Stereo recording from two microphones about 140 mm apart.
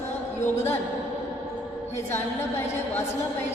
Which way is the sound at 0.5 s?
20° left (ahead or behind).